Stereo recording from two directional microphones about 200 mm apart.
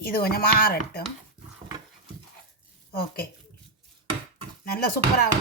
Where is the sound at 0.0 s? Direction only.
50° left (ahead or behind).